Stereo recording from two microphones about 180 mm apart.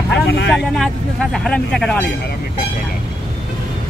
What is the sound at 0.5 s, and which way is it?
Speech, centre (ahead or behind).